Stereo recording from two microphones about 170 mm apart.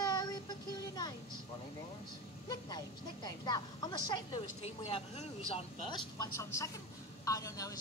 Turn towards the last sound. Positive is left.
turn(degrees=20)  # may be behind; listen again after turning